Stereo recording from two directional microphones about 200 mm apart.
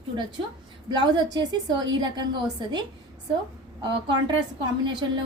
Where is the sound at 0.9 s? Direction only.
20° right (ahead or behind).